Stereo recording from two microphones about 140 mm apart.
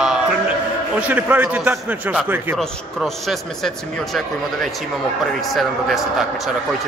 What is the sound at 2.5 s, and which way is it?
A man's voice, centre (ahead or behind).